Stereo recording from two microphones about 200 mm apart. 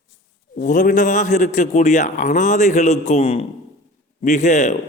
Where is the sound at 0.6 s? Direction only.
40° left (ahead or behind).